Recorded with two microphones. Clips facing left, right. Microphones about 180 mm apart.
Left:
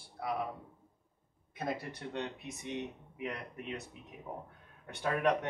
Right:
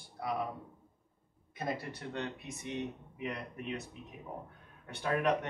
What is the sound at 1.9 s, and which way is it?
Speech, 15° left (ahead or behind).